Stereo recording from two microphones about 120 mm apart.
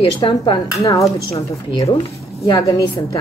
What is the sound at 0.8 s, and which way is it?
Speech, 25° left (ahead or behind).